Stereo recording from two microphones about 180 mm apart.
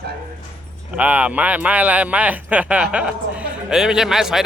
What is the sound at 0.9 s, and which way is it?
Speech, 10° right (ahead or behind).